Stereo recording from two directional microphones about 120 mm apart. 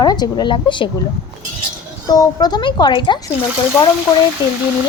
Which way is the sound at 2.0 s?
35° left (ahead or behind).